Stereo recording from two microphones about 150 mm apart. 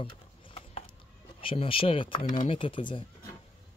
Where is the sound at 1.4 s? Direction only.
35° left (ahead or behind).